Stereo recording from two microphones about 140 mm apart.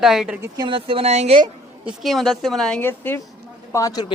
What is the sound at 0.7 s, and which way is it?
Speech, 40° right (ahead or behind).